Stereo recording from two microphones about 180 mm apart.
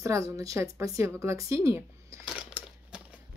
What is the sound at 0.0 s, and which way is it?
A woman's voice, 20° right (ahead or behind).